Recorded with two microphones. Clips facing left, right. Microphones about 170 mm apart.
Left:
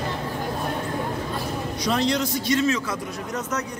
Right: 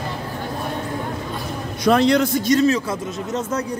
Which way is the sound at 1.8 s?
60° right (ahead or behind).